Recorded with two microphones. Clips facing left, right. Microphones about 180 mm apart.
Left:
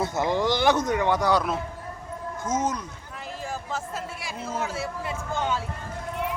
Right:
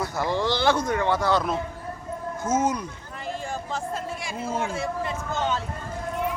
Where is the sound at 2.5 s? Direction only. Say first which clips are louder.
Right 3 dB; 10° right (ahead or behind).